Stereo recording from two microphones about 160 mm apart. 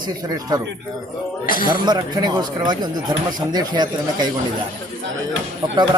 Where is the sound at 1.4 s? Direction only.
60° left (ahead or behind).